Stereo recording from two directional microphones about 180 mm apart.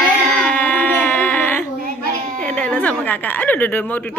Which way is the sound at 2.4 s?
10° left (ahead or behind).